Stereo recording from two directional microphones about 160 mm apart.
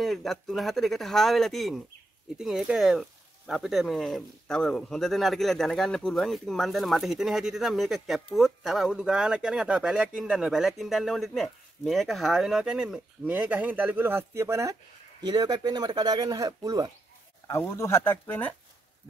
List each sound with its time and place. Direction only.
0.0 s speech: centre (ahead or behind); by 16.9 s 25° right (ahead or behind)
17.5 s speech: 15° left (ahead or behind)